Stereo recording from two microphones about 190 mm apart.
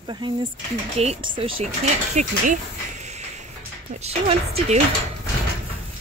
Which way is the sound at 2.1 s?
40° right (ahead or behind).